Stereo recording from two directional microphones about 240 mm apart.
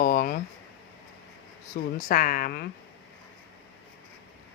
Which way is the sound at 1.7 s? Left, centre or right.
Left.